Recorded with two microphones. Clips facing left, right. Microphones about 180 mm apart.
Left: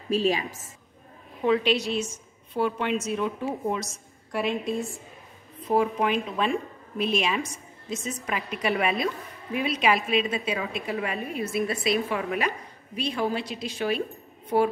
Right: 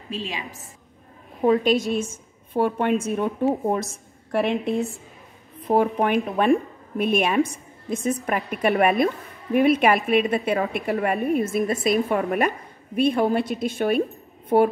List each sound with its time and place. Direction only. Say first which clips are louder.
0.1 s a woman's voice: left 8 dB; 40° left (ahead or behind)
1.4 s a woman's voice: right 4 dB; 40° right (ahead or behind)